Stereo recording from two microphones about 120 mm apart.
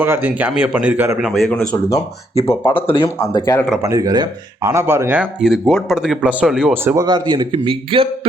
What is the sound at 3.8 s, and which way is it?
Speech, 30° right (ahead or behind).